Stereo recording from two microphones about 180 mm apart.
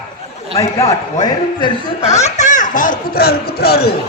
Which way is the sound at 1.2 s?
25° left (ahead or behind).